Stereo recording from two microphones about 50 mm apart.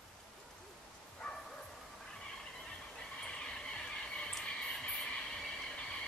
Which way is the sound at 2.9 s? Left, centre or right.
Centre.